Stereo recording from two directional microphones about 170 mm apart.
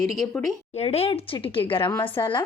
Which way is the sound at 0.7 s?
35° left (ahead or behind).